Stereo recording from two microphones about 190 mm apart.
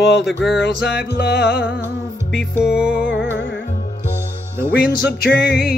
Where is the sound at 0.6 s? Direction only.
60° left (ahead or behind).